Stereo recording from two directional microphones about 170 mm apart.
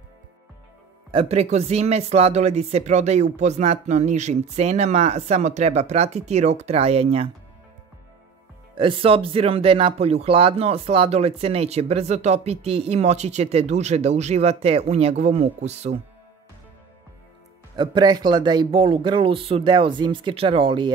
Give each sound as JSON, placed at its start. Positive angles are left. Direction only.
{"t": 1.1, "sound": "speech", "side_deg": -40}
{"t": 8.7, "sound": "speech", "side_deg": -30}
{"t": 17.7, "sound": "speech", "side_deg": -25}